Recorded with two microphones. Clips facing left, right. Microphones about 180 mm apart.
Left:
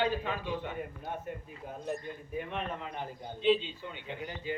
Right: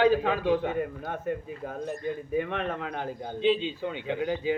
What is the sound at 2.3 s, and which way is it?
A man's voice, 75° right (ahead or behind).